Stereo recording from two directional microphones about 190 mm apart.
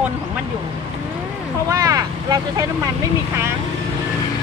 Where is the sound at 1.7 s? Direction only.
20° right (ahead or behind).